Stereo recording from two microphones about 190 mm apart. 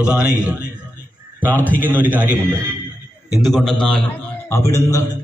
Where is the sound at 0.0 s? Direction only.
5° right (ahead or behind).